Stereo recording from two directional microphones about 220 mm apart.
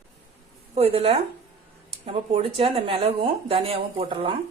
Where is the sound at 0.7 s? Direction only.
25° right (ahead or behind).